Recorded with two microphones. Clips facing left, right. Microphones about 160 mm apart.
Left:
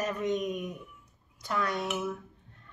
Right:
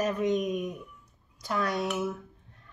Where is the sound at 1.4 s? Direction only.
30° right (ahead or behind).